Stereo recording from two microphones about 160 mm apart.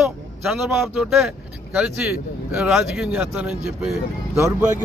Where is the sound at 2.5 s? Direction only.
5° right (ahead or behind).